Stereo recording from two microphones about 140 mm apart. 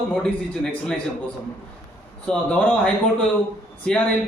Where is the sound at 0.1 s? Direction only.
5° left (ahead or behind).